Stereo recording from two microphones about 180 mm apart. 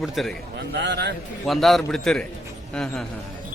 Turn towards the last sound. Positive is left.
turn(degrees=5)  # may be behind; listen again after turning